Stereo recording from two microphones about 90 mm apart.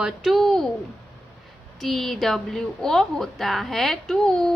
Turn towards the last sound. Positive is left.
turn(degrees=5)  # may be behind; listen again after turning